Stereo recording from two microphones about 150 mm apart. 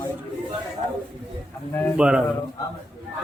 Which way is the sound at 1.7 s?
15° left (ahead or behind).